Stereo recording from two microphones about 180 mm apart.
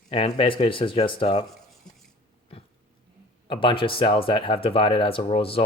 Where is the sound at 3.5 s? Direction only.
30° left (ahead or behind).